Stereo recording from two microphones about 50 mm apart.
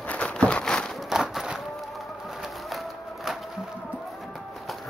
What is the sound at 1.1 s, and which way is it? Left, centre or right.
Run, centre.